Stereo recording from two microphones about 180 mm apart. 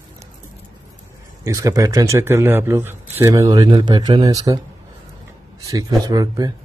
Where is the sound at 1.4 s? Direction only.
20° right (ahead or behind).